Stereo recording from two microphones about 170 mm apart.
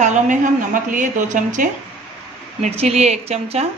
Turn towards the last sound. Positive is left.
turn(degrees=-40)  # may be behind; listen again after turning